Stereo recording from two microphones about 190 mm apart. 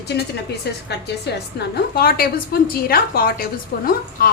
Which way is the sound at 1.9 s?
50° left (ahead or behind).